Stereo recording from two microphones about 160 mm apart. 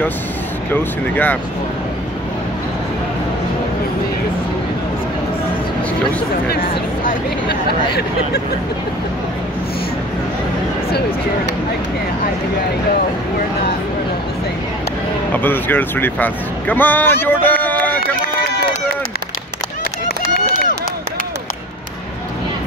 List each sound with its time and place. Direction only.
0.7 s speech: 10° left (ahead or behind)
15.3 s speech: 10° left (ahead or behind)
20.3 s run: 55° left (ahead or behind)